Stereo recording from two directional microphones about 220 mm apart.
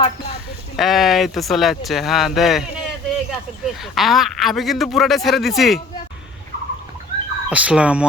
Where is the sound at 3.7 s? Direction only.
Centre (ahead or behind).